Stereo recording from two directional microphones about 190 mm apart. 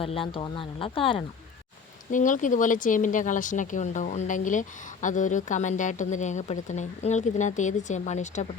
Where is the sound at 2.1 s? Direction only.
45° left (ahead or behind).